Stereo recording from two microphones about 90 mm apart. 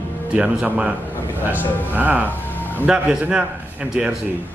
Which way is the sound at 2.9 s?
10° right (ahead or behind).